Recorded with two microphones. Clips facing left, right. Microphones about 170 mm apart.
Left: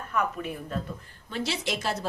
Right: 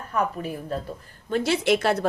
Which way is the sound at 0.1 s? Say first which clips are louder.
Right 3 dB; 35° right (ahead or behind).